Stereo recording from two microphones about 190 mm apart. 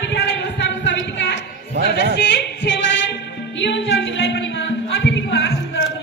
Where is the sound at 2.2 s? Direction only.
65° left (ahead or behind).